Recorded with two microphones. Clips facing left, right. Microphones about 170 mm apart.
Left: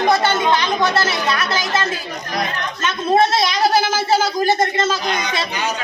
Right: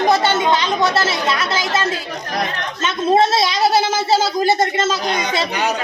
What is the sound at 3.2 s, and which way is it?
Speech, 25° right (ahead or behind).